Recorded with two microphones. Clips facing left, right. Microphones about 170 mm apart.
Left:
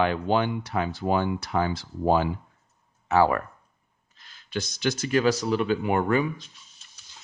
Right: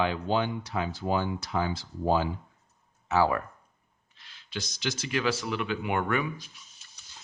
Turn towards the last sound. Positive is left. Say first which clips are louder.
# left 5 dB
turn(degrees=30)  # may be behind; listen again after turning